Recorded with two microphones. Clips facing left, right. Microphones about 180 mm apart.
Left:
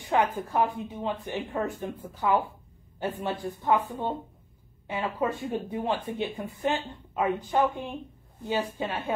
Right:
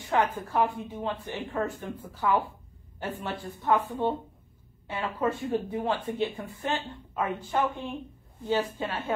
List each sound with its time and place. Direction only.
0.1 s a woman's voice: 15° left (ahead or behind)